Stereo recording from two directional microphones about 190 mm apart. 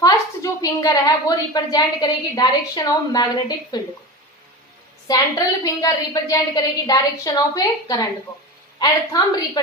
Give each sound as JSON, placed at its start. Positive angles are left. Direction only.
{"t": 0.0, "sound": "a woman's voice", "side_deg": 20}
{"t": 5.0, "sound": "a woman's voice", "side_deg": 20}